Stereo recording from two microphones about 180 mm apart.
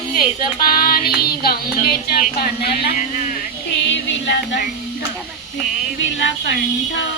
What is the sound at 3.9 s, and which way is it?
Music, 75° left (ahead or behind).